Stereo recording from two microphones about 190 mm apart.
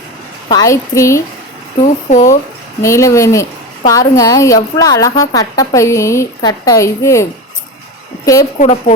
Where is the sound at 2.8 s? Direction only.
15° left (ahead or behind).